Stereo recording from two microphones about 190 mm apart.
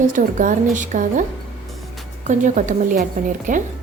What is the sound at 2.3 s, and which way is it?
A woman's voice, 40° right (ahead or behind).